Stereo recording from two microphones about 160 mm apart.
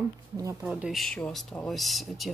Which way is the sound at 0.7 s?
Centre (ahead or behind).